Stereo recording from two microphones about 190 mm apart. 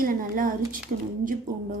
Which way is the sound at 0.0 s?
45° right (ahead or behind).